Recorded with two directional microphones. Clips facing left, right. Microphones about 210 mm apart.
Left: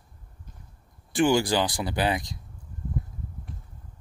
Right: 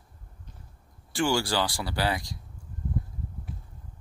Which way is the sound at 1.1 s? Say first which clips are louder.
Left 5 dB; 20° left (ahead or behind).